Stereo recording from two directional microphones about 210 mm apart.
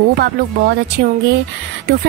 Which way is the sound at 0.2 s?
50° right (ahead or behind).